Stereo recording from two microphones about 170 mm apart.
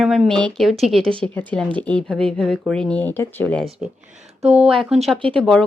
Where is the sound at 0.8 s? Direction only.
35° right (ahead or behind).